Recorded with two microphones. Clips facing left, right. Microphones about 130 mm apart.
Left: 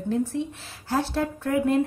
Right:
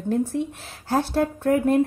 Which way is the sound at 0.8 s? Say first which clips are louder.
Right 3 dB; 50° right (ahead or behind).